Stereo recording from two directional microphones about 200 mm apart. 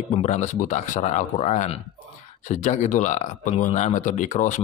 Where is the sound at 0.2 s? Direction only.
35° left (ahead or behind).